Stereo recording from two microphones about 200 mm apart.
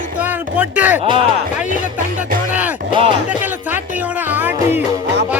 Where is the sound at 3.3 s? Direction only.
10° right (ahead or behind).